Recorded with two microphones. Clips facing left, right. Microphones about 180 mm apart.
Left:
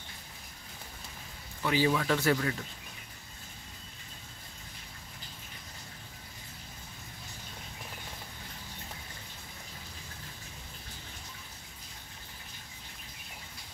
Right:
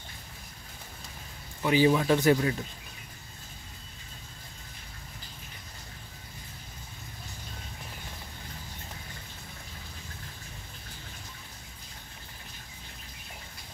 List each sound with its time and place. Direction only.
1.6 s speech: 15° right (ahead or behind)